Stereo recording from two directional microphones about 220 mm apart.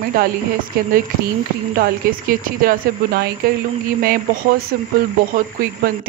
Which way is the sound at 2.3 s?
40° right (ahead or behind).